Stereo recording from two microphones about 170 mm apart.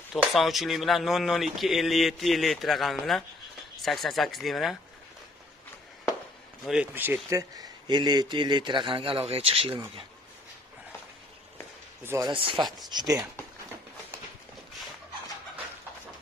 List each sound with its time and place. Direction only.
0.1 s speech: centre (ahead or behind)
6.6 s speech: 5° right (ahead or behind); by 9.8 s 35° right (ahead or behind)
12.0 s speech: 15° right (ahead or behind)
12.3 s speech: 30° right (ahead or behind)